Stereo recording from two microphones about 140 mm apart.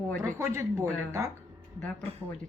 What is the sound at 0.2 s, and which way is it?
Speech, 20° right (ahead or behind).